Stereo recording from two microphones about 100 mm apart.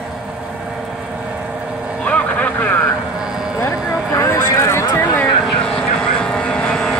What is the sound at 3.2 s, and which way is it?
Clip-clop, 5° right (ahead or behind).